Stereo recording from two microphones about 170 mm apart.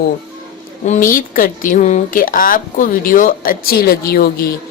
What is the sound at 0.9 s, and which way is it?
A woman's voice, 55° left (ahead or behind).